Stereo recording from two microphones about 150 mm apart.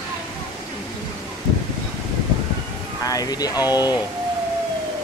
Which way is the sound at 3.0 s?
25° left (ahead or behind).